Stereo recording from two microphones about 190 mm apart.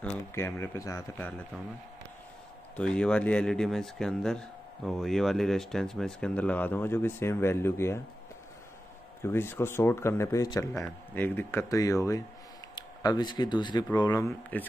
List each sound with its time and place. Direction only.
0.0 s a man's voice: 15° left (ahead or behind)
2.7 s speech: 5° left (ahead or behind)
9.2 s a man's voice: 10° left (ahead or behind)
14.5 s a man's voice: 10° left (ahead or behind)